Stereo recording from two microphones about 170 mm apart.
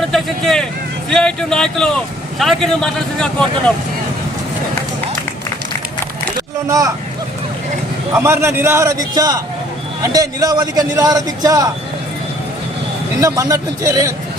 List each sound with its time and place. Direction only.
0.0 s speech: centre (ahead or behind)
6.7 s a man's voice: 20° right (ahead or behind)
8.1 s a man's voice: 15° right (ahead or behind)
13.1 s a man's voice: 20° right (ahead or behind)